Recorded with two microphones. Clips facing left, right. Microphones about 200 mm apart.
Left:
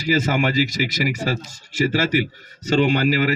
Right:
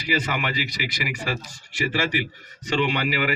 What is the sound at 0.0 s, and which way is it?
A man's voice, 45° left (ahead or behind).